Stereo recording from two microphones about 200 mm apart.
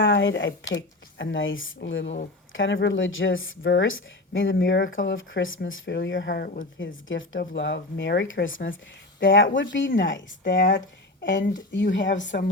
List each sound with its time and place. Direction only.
0.0 s speech: 70° left (ahead or behind); by 6.6 s 50° left (ahead or behind)
6.6 s speech: 70° left (ahead or behind)
11.7 s speech: 65° left (ahead or behind)